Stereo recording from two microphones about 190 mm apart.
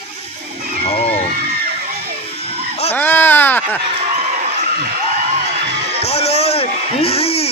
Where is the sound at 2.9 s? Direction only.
10° left (ahead or behind).